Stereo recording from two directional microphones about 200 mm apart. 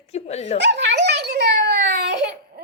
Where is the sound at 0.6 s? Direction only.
60° right (ahead or behind).